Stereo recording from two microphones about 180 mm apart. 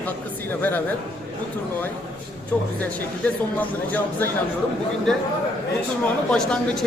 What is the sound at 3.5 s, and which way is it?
A man's voice, 10° left (ahead or behind).